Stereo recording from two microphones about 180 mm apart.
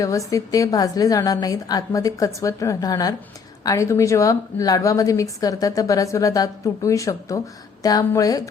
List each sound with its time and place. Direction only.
0.0 s a woman's voice: 20° left (ahead or behind)